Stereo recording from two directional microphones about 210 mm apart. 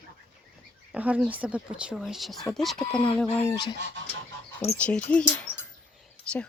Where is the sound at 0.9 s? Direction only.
5° right (ahead or behind).